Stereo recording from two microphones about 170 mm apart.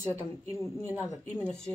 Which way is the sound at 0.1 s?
15° left (ahead or behind).